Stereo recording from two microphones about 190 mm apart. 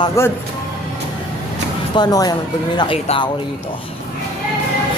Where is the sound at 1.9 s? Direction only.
20° left (ahead or behind).